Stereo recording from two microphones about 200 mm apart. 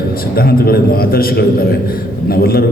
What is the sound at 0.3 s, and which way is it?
A man's voice, 50° left (ahead or behind).